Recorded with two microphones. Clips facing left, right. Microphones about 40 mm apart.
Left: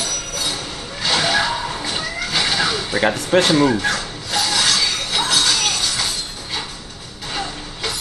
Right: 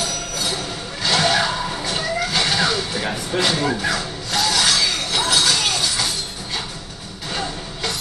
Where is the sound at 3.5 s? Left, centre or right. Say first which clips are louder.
Left 3 dB; centre.